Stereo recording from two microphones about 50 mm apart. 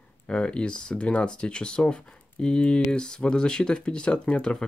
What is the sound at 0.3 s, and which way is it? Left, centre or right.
Speech, centre.